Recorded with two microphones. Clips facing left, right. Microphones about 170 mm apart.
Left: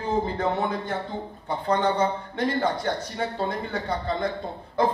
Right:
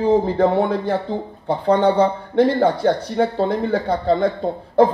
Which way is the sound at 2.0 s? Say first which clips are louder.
Right 9 dB; 60° right (ahead or behind).